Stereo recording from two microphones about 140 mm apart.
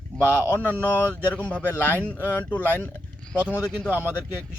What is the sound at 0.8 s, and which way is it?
Speech, 15° left (ahead or behind).